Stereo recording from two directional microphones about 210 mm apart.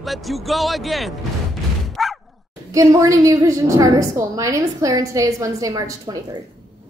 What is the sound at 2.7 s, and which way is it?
A woman's voice, 15° right (ahead or behind).